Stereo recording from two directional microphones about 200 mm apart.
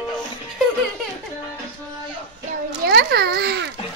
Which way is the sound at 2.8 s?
55° right (ahead or behind).